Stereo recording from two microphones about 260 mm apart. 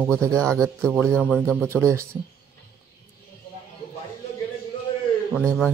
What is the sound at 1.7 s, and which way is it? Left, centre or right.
Speech, centre.